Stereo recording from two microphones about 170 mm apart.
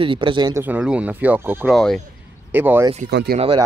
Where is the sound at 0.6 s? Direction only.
10° right (ahead or behind).